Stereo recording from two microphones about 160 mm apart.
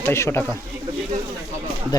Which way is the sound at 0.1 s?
15° left (ahead or behind).